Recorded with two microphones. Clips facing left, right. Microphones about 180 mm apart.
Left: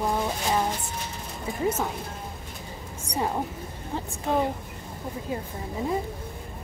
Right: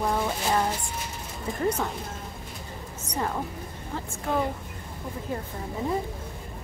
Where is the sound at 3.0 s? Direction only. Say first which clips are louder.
Left 2 dB; 15° left (ahead or behind).